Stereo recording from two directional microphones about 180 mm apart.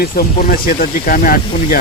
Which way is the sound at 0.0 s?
55° left (ahead or behind).